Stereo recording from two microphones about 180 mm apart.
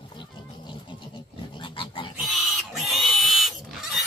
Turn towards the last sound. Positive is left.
turn(degrees=0)  # may be behind; listen again after turning